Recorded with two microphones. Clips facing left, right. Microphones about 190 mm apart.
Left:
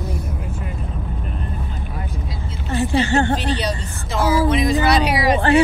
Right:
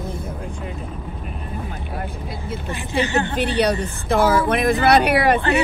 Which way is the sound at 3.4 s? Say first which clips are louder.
Right 4 dB; 60° right (ahead or behind).